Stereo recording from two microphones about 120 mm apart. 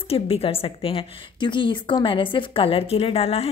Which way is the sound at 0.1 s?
55° left (ahead or behind).